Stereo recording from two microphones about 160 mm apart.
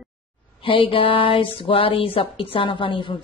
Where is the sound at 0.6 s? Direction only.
35° left (ahead or behind).